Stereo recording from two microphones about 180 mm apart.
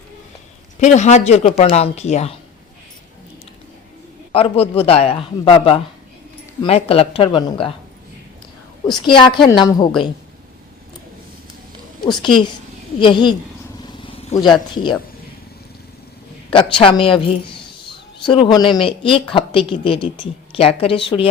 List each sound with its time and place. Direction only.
0.8 s speech: 40° left (ahead or behind)
4.3 s speech: 35° left (ahead or behind)
9.0 s a woman's voice: 25° left (ahead or behind)
12.0 s a woman's voice: 25° left (ahead or behind)
14.3 s a woman's voice: 25° left (ahead or behind)
16.8 s a woman's voice: 30° left (ahead or behind)